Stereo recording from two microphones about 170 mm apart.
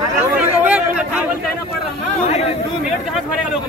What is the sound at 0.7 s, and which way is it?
Speech, 5° right (ahead or behind).